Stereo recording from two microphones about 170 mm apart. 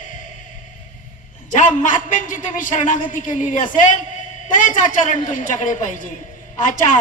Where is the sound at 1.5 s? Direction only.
50° left (ahead or behind).